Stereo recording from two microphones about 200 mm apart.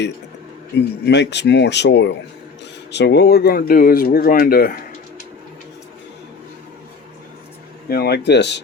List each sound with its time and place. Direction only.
1.0 s speech: 60° left (ahead or behind)
7.9 s speech: 50° left (ahead or behind)